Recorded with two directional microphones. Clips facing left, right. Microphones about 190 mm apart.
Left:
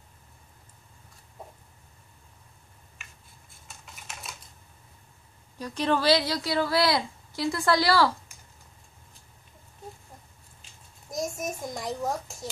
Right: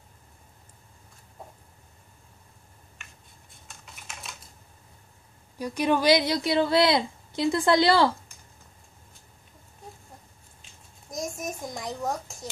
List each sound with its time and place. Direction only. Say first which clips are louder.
3.6 s typing: left 1 dB; centre (ahead or behind)
5.6 s a woman's voice: right 2 dB; 10° right (ahead or behind)
10.6 s a sound: right 1 dB; centre (ahead or behind)